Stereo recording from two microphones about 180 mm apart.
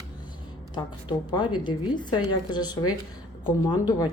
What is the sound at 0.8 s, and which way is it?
A woman's voice, 25° left (ahead or behind).